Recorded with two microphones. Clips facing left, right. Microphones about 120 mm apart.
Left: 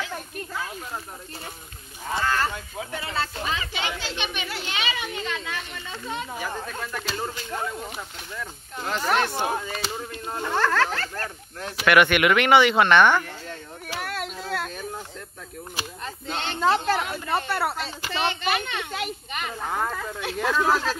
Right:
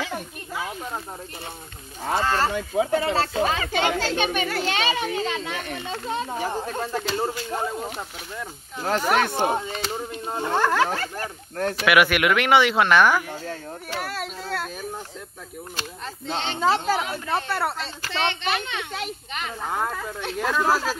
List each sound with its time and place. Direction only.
2.2 s speech: 30° right (ahead or behind)
9.0 s speech: 15° right (ahead or behind)
9.7 s speech: 5° left (ahead or behind)
9.9 s speech: 20° right (ahead or behind); by 13.2 s centre (ahead or behind)
13.9 s a sound: centre (ahead or behind)
16.3 s speech: centre (ahead or behind)